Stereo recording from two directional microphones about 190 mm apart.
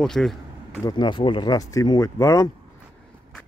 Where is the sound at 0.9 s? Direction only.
25° left (ahead or behind).